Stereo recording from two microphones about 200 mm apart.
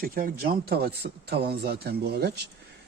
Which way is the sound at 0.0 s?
50° right (ahead or behind).